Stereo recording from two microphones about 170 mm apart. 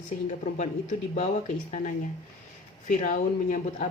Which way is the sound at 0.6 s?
45° left (ahead or behind).